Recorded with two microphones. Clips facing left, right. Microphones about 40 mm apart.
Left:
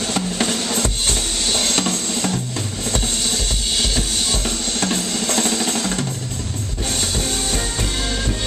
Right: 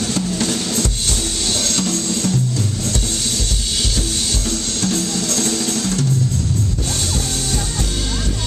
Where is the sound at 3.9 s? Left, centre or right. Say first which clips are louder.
Even; left.